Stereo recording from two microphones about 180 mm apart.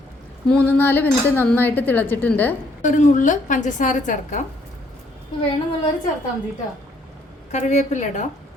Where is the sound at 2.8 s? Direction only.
45° left (ahead or behind).